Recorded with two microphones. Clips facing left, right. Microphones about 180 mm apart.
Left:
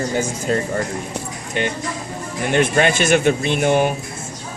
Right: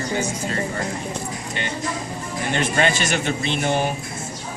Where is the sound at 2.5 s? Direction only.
55° left (ahead or behind).